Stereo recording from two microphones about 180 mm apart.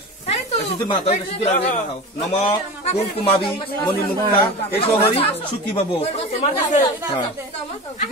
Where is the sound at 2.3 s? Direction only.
30° left (ahead or behind).